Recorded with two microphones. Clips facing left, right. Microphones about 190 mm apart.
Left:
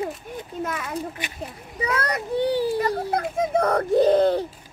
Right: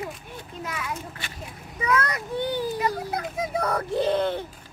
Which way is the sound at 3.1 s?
50° left (ahead or behind).